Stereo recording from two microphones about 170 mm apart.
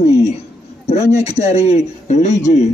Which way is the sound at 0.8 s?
40° left (ahead or behind).